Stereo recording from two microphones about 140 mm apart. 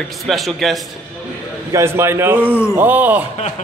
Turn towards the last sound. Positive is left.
turn(degrees=-10)  # may be behind; listen again after turning